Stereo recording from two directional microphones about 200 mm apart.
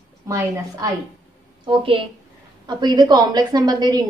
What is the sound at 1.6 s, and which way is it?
A woman's voice, 25° right (ahead or behind).